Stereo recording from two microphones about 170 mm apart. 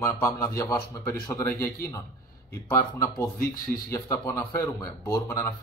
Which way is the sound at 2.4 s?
10° left (ahead or behind).